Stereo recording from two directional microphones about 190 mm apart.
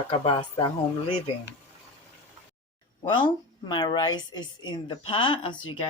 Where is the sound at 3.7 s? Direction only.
25° left (ahead or behind).